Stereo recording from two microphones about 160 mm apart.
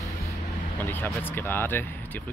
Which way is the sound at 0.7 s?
10° left (ahead or behind).